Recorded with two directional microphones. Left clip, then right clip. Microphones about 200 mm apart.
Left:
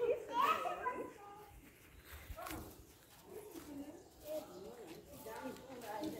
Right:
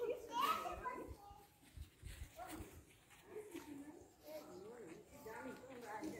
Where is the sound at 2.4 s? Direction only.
25° right (ahead or behind).